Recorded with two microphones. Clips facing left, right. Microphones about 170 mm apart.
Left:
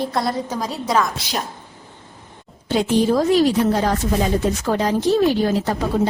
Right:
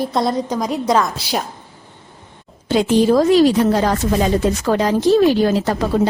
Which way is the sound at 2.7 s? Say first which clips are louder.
Right 3 dB; 90° right.